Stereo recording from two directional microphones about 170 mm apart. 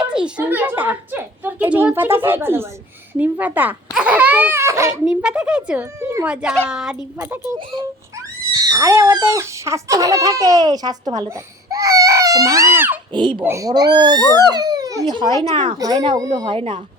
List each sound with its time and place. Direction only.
0.0 s a woman's voice: 5° right (ahead or behind)
5.0 s a woman's voice: 5° right (ahead or behind)
8.6 s speech: 20° right (ahead or behind)
11.7 s baby cry: 20° right (ahead or behind)
12.7 s a woman's voice: 10° right (ahead or behind)
13.1 s speech: 25° right (ahead or behind)
13.4 s speech: 15° right (ahead or behind)